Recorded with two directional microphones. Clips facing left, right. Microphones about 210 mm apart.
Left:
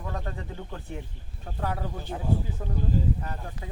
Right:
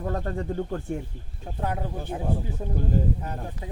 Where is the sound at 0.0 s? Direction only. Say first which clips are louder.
Right 7 dB; 45° right (ahead or behind).